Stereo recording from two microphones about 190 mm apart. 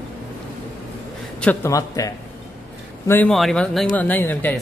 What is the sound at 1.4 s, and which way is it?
Speech, 10° left (ahead or behind).